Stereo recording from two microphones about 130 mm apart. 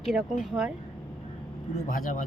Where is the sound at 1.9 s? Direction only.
90° left.